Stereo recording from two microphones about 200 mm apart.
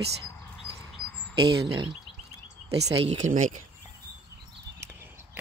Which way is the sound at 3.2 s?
40° right (ahead or behind).